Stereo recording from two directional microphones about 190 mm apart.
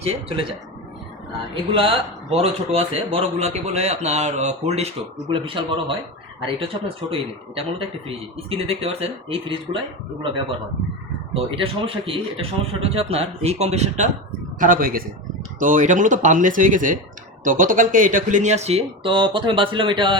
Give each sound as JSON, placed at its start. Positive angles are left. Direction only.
{"t": 0.0, "sound": "a man's voice", "side_deg": -35}
{"t": 1.7, "sound": "a man's voice", "side_deg": -30}
{"t": 11.3, "sound": "a man's voice", "side_deg": -30}